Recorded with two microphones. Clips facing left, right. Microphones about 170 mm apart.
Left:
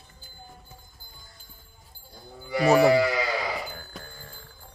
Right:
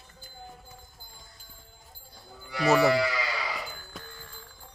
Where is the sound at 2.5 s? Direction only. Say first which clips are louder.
Left 4 dB; 40° left (ahead or behind).